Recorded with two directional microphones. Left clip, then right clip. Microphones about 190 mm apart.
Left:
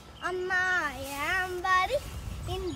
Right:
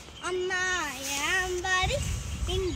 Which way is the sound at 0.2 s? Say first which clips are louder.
Left 1 dB; 15° left (ahead or behind).